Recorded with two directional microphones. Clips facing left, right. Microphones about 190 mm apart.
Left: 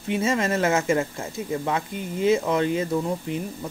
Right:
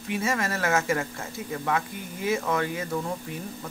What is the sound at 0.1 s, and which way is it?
Speech, 25° left (ahead or behind).